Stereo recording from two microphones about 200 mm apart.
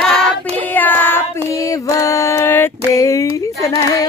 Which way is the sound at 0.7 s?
10° left (ahead or behind).